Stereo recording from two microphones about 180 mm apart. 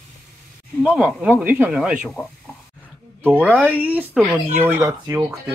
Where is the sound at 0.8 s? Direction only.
5° right (ahead or behind).